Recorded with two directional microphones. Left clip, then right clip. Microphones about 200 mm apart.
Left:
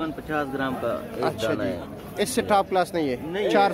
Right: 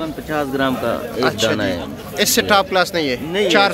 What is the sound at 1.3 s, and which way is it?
Speech, 5° left (ahead or behind).